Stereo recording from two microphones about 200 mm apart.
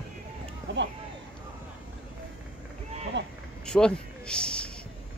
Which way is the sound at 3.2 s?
60° right (ahead or behind).